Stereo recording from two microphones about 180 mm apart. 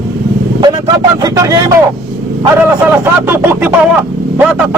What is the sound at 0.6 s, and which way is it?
Speech, 25° right (ahead or behind).